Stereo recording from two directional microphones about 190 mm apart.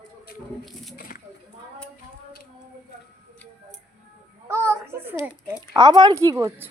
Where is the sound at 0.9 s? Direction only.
50° left (ahead or behind).